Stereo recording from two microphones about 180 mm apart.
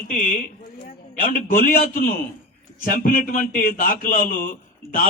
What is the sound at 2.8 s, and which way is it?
A man's voice, 50° left (ahead or behind).